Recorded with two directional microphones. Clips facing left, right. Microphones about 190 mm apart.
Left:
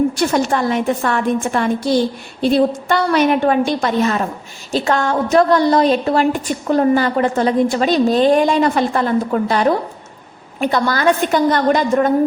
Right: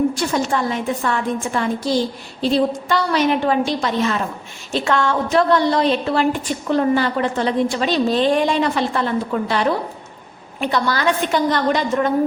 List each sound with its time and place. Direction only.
0.1 s a woman's voice: 65° left (ahead or behind); by 12.1 s 45° left (ahead or behind)